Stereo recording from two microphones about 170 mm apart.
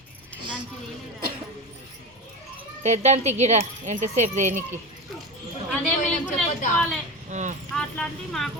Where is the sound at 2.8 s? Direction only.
40° right (ahead or behind).